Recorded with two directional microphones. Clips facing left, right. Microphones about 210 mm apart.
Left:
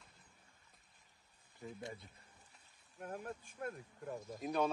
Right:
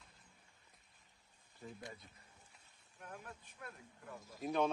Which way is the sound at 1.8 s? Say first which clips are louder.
Left 4 dB; 25° left (ahead or behind).